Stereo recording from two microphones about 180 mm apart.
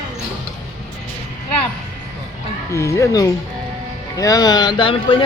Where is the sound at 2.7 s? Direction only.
15° left (ahead or behind).